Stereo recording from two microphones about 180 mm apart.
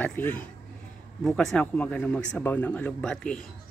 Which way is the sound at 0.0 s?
10° left (ahead or behind).